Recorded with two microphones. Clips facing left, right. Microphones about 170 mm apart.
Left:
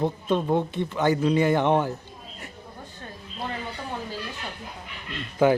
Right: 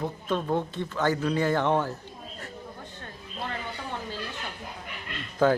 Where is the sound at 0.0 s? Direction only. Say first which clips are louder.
Left 5 dB; 20° left (ahead or behind).